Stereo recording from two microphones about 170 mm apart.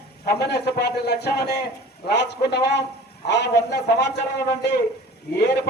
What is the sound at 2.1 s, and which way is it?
Music, 90° left.